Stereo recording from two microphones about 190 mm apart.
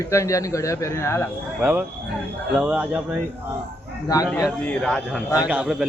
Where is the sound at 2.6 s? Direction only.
10° right (ahead or behind).